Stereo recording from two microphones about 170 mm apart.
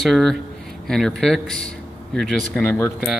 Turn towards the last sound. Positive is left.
turn(degrees=10)  # may be behind; listen again after turning